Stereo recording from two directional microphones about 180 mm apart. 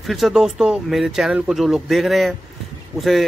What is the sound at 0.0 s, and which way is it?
Speech, centre (ahead or behind).